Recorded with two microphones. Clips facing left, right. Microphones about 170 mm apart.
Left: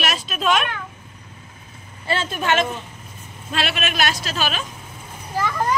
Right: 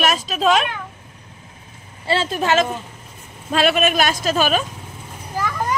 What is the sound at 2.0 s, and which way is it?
A woman's voice, 30° right (ahead or behind).